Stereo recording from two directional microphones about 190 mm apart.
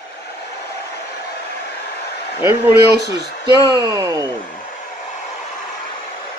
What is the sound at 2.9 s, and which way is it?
Speech, 60° right (ahead or behind).